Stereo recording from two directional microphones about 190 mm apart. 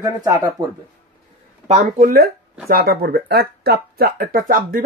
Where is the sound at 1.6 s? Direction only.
35° right (ahead or behind).